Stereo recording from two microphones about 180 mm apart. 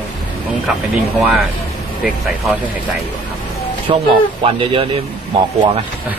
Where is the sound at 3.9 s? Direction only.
30° right (ahead or behind).